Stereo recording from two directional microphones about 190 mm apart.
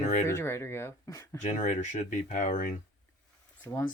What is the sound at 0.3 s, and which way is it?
Speech, 15° left (ahead or behind).